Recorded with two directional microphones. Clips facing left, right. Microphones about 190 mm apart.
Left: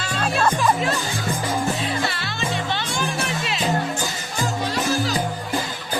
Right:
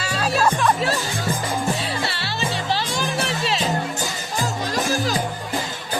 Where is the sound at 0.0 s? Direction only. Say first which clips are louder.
Right 1 dB; 5° right (ahead or behind).